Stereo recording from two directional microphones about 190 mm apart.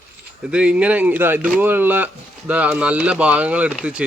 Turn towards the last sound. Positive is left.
turn(degrees=-5)  # may be behind; listen again after turning